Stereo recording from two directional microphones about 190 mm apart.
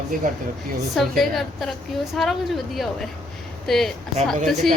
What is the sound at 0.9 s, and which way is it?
Speech, centre (ahead or behind).